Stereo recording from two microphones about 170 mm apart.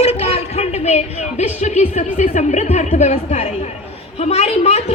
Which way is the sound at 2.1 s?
45° left (ahead or behind).